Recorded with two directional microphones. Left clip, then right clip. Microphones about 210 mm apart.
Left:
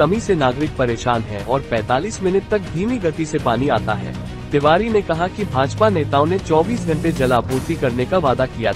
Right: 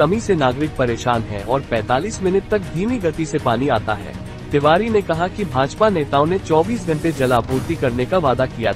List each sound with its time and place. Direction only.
0.0 s speech: centre (ahead or behind)